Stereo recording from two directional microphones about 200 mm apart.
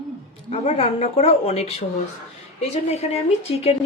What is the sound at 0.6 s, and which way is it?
Speech, 30° left (ahead or behind).